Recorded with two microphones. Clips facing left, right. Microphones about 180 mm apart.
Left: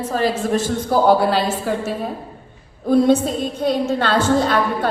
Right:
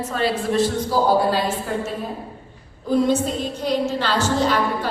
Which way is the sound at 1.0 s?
70° left (ahead or behind).